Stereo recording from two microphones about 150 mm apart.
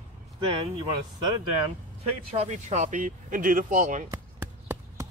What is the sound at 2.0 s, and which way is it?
Speech, 45° right (ahead or behind).